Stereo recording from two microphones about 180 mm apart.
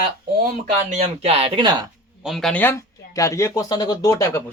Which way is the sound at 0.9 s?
35° right (ahead or behind).